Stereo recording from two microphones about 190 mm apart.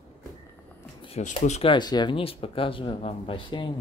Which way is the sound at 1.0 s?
35° left (ahead or behind).